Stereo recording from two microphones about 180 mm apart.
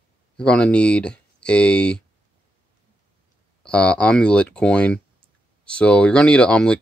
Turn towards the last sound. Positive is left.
turn(degrees=5)  # may be behind; listen again after turning